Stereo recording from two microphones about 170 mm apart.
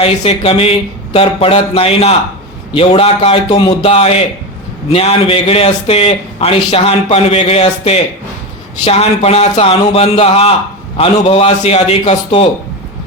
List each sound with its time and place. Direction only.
0.0 s a man's voice: 35° left (ahead or behind)